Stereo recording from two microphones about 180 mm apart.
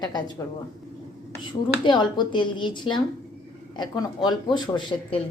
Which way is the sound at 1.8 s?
25° left (ahead or behind).